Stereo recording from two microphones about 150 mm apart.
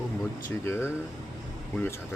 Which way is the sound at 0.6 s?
15° left (ahead or behind).